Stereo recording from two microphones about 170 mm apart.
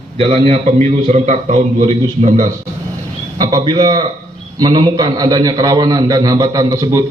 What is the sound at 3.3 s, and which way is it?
A man's voice, 25° right (ahead or behind).